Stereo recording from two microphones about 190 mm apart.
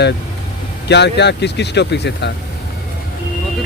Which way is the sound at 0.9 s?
65° left (ahead or behind).